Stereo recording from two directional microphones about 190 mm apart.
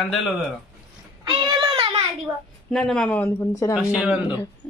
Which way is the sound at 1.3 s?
25° right (ahead or behind).